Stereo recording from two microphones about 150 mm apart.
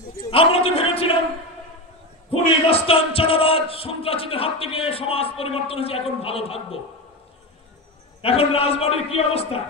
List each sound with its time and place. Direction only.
0.3 s a sound: 40° left (ahead or behind)
2.3 s speech: 40° left (ahead or behind)
8.2 s speech: 40° left (ahead or behind)